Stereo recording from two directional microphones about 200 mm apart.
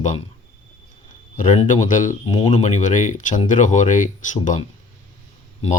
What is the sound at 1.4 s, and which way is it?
Speech, 40° left (ahead or behind).